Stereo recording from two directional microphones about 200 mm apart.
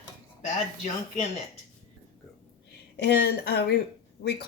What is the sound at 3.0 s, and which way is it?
Speech, 55° left (ahead or behind).